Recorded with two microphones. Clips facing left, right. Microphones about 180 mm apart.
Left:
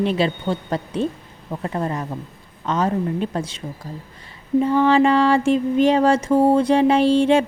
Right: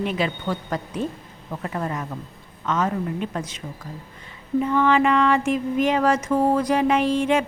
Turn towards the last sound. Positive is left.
turn(degrees=30)  # may be behind; listen again after turning